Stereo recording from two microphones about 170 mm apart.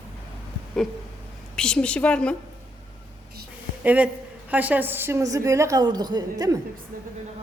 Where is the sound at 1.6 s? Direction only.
5° left (ahead or behind).